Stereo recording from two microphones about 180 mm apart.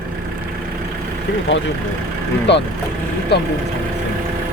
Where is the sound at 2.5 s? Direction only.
75° left (ahead or behind).